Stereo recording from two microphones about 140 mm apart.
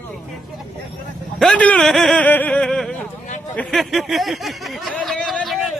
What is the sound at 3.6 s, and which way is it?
A man's voice, centre (ahead or behind).